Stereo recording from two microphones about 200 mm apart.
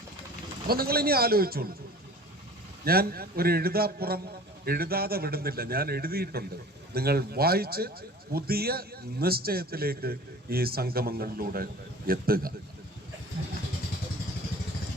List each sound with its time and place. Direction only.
0.7 s a man's voice: 50° right (ahead or behind)
2.8 s a man's voice: 50° right (ahead or behind)